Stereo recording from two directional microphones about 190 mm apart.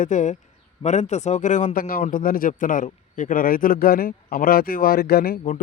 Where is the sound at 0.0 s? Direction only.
40° left (ahead or behind).